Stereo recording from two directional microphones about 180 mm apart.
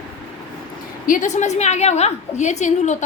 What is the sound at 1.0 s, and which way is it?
A woman's voice, 45° left (ahead or behind).